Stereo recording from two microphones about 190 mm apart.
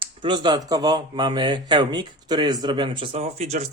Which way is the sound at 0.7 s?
20° right (ahead or behind).